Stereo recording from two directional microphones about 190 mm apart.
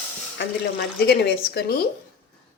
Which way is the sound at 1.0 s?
60° left (ahead or behind).